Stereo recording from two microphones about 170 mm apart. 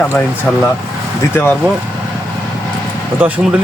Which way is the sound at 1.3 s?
15° left (ahead or behind).